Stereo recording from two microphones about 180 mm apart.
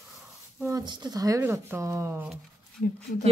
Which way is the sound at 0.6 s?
20° right (ahead or behind).